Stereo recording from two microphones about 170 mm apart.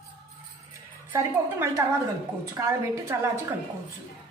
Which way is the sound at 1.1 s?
15° right (ahead or behind).